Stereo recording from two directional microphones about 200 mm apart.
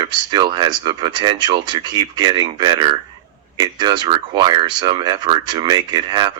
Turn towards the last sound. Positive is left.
turn(degrees=-20)  # may be behind; listen again after turning